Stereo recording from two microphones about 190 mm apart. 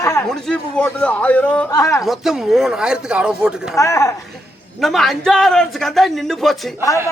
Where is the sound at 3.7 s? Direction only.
15° left (ahead or behind).